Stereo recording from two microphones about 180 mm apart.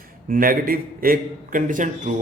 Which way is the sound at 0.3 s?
50° right (ahead or behind).